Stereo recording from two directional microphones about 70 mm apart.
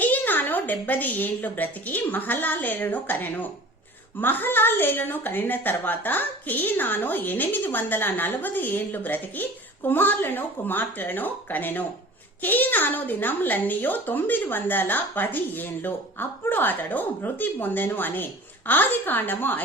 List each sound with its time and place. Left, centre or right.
0.0 s a woman's voice: left